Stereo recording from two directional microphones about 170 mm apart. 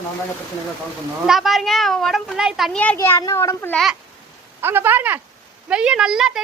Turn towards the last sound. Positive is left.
turn(degrees=-5)  # may be behind; listen again after turning